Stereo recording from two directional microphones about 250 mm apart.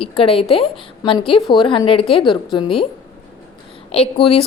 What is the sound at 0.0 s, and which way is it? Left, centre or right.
A woman's voice, left.